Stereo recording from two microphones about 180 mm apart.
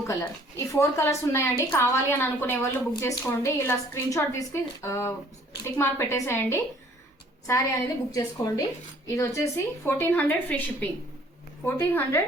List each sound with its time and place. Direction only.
0.1 s a woman's voice: 15° left (ahead or behind)
9.8 s a woman's voice: 10° left (ahead or behind)